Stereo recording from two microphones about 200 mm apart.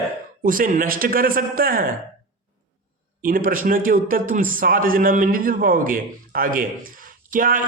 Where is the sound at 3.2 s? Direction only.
45° right (ahead or behind).